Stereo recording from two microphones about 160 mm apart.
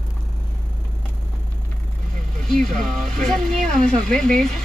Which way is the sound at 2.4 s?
Centre (ahead or behind).